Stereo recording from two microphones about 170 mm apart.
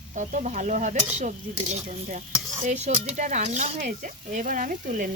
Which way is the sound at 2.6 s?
40° right (ahead or behind).